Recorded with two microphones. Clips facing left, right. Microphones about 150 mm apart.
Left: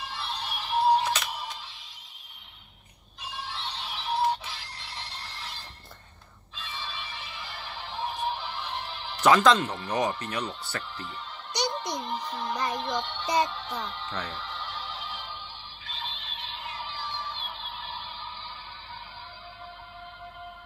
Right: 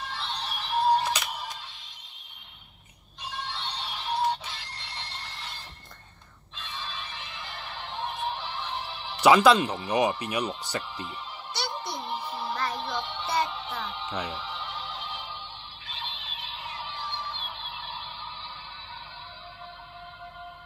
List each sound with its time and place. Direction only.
0.1 s music: 5° left (ahead or behind)
1.0 s music: 10° right (ahead or behind)
3.3 s music: 5° left (ahead or behind)
6.5 s music: 5° left (ahead or behind)
9.2 s speech: 10° right (ahead or behind)
11.6 s music: 15° left (ahead or behind)
12.0 s music: 5° right (ahead or behind)
15.8 s a sound: centre (ahead or behind)